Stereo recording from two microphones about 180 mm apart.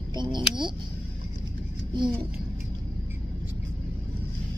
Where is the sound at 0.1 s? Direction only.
25° right (ahead or behind).